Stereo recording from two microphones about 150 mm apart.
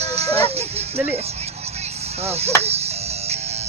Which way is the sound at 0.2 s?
40° right (ahead or behind).